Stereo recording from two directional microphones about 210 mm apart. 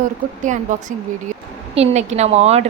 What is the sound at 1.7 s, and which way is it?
Speech, 30° right (ahead or behind).